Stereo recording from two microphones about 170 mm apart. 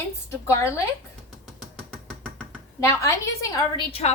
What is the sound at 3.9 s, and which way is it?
Speech, 35° left (ahead or behind).